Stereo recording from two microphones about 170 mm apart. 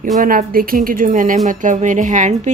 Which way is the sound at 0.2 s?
55° right (ahead or behind).